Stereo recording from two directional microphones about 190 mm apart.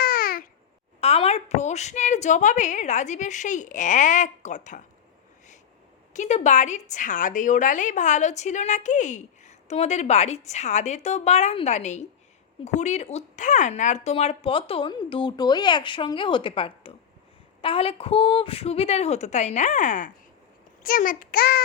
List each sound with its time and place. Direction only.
0.0 s babbling: 50° left (ahead or behind)
1.0 s a woman's voice: 30° left (ahead or behind)
6.1 s a woman's voice: 40° left (ahead or behind)